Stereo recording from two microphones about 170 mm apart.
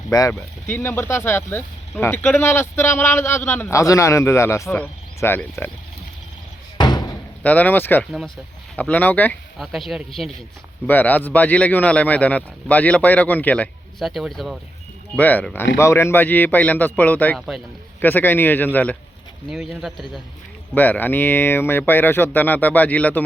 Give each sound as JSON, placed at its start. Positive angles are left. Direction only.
{"t": 0.1, "sound": "speech", "side_deg": 15}
{"t": 6.7, "sound": "slam", "side_deg": 25}
{"t": 7.4, "sound": "speech", "side_deg": 10}
{"t": 9.6, "sound": "speech", "side_deg": 0}
{"t": 19.5, "sound": "speech", "side_deg": 0}
{"t": 20.7, "sound": "speech", "side_deg": 10}